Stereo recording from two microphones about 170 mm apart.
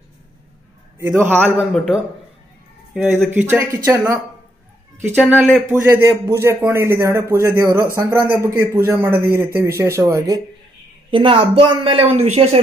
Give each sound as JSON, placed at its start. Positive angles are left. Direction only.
{"t": 0.9, "sound": "a man's voice", "side_deg": -15}
{"t": 2.9, "sound": "a man's voice", "side_deg": -10}
{"t": 5.3, "sound": "a man's voice", "side_deg": -10}
{"t": 11.1, "sound": "speech", "side_deg": -30}